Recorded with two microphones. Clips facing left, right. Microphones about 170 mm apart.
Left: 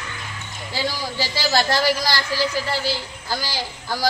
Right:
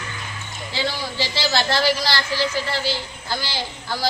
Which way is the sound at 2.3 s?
40° left (ahead or behind).